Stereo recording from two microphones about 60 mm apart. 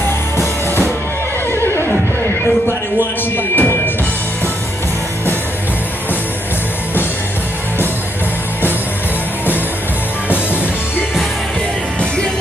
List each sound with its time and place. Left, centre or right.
0.0 s music: left
1.5 s neigh: left
3.0 s a sound: left